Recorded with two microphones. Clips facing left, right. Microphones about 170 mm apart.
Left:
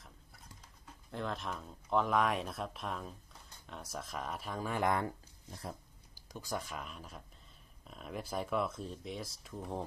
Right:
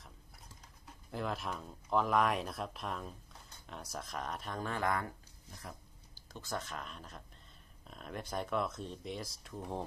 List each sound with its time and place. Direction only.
1.1 s speech: 5° right (ahead or behind)
4.7 s speech: 25° left (ahead or behind)
6.3 s speech: 10° left (ahead or behind)